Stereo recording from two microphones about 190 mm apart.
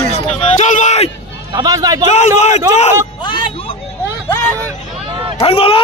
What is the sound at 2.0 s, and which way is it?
Speech, 35° left (ahead or behind).